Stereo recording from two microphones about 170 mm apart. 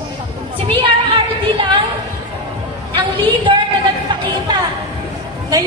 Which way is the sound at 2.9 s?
30° right (ahead or behind).